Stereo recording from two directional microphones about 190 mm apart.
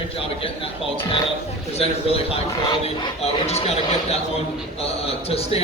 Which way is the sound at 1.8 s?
30° left (ahead or behind).